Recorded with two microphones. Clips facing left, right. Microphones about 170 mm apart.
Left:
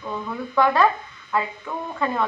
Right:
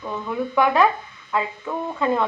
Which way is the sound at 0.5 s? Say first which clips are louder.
Even; 15° right (ahead or behind).